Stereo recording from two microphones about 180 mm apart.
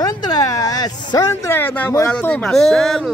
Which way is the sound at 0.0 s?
20° left (ahead or behind).